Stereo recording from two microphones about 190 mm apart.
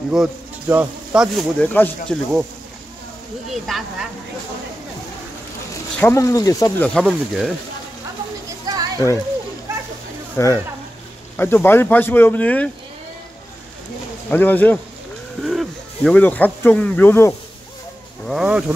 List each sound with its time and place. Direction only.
0.1 s speech: 5° right (ahead or behind)
3.5 s speech: centre (ahead or behind)
5.9 s speech: 10° left (ahead or behind)
6.8 s speech: 5° left (ahead or behind)
8.6 s children playing: 20° right (ahead or behind)
9.7 s a sound: 15° right (ahead or behind)
10.3 s speech: 15° left (ahead or behind)
14.3 s speech: 10° left (ahead or behind)
18.2 s speech: 5° right (ahead or behind)